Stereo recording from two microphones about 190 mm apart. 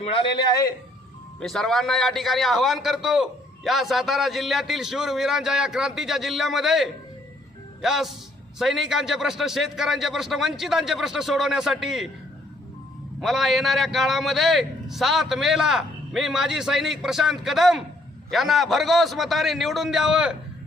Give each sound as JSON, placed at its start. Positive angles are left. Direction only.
{"t": 0.0, "sound": "a man's voice", "side_deg": 30}
{"t": 1.4, "sound": "a man's voice", "side_deg": 0}
{"t": 13.2, "sound": "a man's voice", "side_deg": 0}